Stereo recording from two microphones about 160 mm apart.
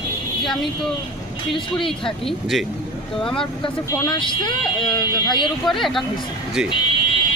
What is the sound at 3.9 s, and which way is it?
Speech, 30° left (ahead or behind).